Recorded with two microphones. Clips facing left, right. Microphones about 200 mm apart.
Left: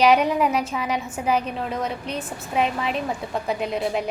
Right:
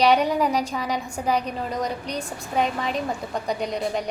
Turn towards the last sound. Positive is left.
turn(degrees=5)  # may be behind; listen again after turning